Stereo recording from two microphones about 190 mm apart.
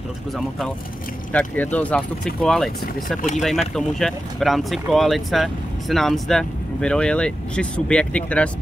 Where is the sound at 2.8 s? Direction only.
50° left (ahead or behind).